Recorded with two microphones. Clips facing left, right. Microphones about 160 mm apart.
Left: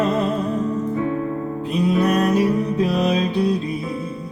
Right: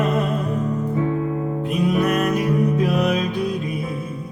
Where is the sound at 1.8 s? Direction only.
30° left (ahead or behind).